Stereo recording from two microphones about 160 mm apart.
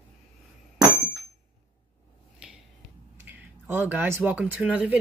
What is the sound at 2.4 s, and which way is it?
Finger snapping, 5° right (ahead or behind).